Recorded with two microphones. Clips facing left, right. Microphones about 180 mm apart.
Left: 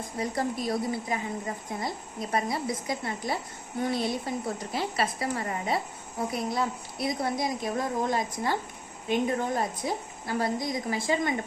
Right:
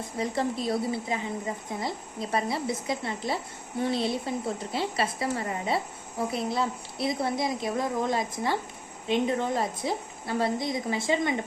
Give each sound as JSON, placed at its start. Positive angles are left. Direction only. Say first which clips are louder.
{"t": 0.0, "sound": "a woman's voice", "louder": "right 1 dB", "side_deg": -25}